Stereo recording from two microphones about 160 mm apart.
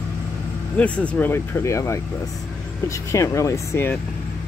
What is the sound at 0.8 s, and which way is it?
Speech, 10° left (ahead or behind).